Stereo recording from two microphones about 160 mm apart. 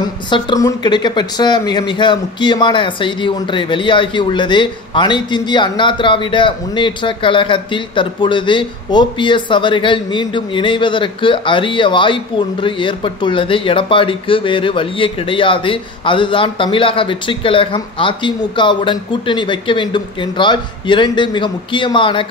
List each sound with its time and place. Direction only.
0.3 s speech: 25° left (ahead or behind)